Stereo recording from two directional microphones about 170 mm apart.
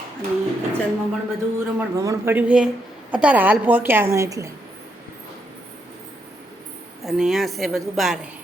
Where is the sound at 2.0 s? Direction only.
15° right (ahead or behind).